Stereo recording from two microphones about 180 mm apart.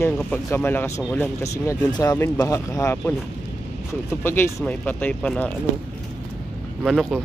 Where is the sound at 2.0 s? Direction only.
20° left (ahead or behind).